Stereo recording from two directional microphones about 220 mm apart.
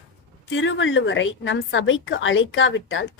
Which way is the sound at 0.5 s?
60° left (ahead or behind).